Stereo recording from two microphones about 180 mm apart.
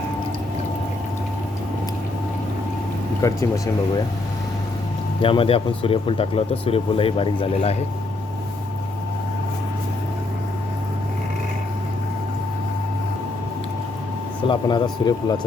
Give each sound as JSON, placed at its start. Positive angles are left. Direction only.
{"t": 3.2, "sound": "speech", "side_deg": 15}
{"t": 5.2, "sound": "speech", "side_deg": 30}
{"t": 14.4, "sound": "speech", "side_deg": 25}